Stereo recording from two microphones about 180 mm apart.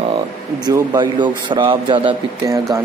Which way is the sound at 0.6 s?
20° right (ahead or behind).